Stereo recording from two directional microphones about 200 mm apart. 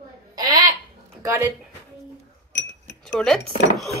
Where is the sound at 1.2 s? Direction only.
10° right (ahead or behind).